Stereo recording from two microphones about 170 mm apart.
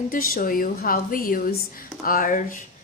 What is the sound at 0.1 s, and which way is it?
Speech, 55° left (ahead or behind).